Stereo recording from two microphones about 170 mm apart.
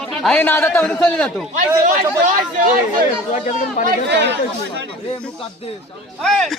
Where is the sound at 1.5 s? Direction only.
50° right (ahead or behind).